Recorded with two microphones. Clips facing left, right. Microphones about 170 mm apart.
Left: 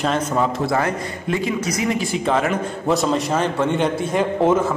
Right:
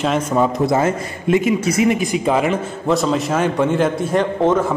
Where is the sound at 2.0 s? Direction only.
10° right (ahead or behind).